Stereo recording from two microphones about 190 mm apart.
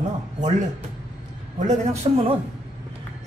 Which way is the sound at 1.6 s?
40° right (ahead or behind).